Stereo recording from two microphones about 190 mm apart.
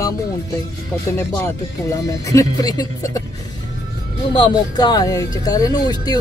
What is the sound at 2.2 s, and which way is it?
Speech, 20° left (ahead or behind).